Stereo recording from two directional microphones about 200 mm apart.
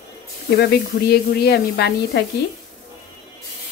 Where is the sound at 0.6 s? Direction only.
55° left (ahead or behind).